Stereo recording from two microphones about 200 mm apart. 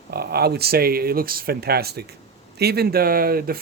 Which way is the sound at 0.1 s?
50° right (ahead or behind).